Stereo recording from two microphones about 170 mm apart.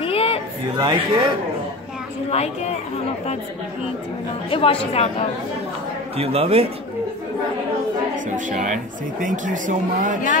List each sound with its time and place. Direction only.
0.0 s a sound: 35° left (ahead or behind)
0.7 s a man's voice: 25° right (ahead or behind)
2.3 s a woman's voice: 40° left (ahead or behind)
4.5 s a woman's voice: 35° left (ahead or behind)
6.1 s a man's voice: 35° right (ahead or behind)
8.3 s speech: 45° right (ahead or behind)